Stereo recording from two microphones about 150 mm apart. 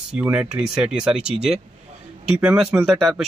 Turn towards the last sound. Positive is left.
turn(degrees=0)  # may be behind; listen again after turning